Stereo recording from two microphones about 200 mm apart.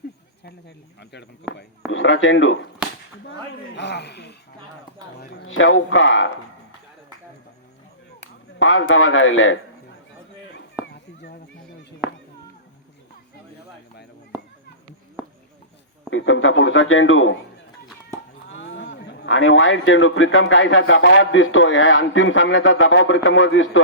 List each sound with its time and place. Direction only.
1.9 s a man's voice: 75° left (ahead or behind)
3.8 s speech: 60° left (ahead or behind)
5.5 s a man's voice: 80° left
8.5 s a man's voice: 75° left (ahead or behind)
10.5 s a sound: 60° left (ahead or behind)
16.0 s a man's voice: 80° left
18.6 s a man's voice: 70° left (ahead or behind)